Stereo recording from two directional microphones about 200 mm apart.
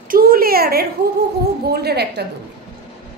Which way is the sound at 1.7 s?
55° right (ahead or behind).